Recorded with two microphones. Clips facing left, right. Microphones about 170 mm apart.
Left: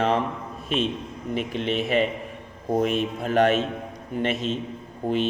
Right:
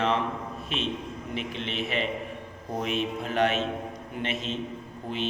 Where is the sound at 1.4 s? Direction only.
45° left (ahead or behind).